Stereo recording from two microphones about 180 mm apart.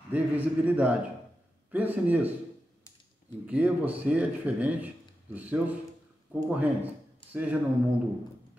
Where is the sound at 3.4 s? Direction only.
10° right (ahead or behind).